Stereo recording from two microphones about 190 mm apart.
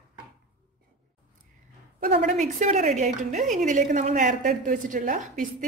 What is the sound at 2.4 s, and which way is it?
A woman's voice, 40° right (ahead or behind).